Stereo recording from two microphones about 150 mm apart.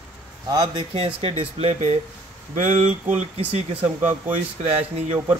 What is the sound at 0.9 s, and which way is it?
Speech, 40° right (ahead or behind).